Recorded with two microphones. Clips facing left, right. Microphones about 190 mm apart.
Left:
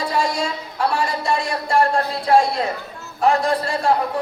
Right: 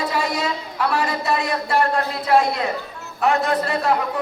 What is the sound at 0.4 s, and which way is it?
A man's voice, 30° left (ahead or behind).